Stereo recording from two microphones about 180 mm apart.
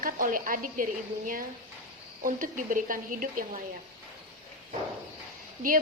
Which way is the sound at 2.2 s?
50° right (ahead or behind).